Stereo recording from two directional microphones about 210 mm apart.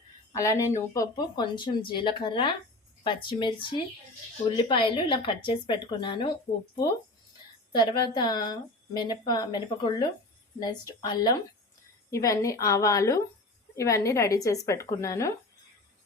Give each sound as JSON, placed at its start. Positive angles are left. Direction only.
{"t": 0.3, "sound": "a woman's voice", "side_deg": 15}
{"t": 7.7, "sound": "a woman's voice", "side_deg": 20}